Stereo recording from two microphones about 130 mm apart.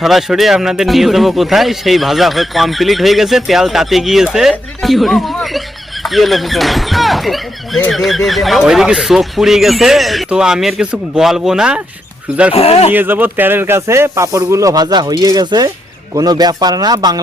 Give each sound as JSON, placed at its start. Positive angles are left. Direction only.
{"t": 0.0, "sound": "speech", "side_deg": 0}
{"t": 12.5, "sound": "speech", "side_deg": 50}
{"t": 12.9, "sound": "speech", "side_deg": -15}